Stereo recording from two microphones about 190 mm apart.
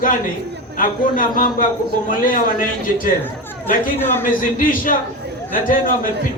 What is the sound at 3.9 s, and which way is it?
Speech, 10° left (ahead or behind).